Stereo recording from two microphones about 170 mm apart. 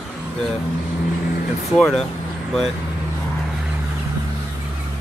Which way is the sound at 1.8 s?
5° left (ahead or behind).